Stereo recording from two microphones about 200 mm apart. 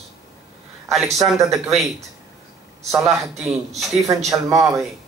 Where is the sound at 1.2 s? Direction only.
Centre (ahead or behind).